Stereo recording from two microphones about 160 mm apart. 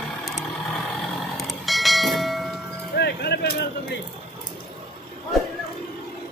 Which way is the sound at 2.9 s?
90° left.